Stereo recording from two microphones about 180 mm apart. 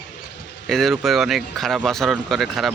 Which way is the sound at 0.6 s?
Centre (ahead or behind).